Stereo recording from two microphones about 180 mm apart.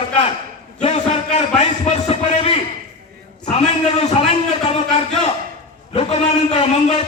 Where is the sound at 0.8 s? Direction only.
40° left (ahead or behind).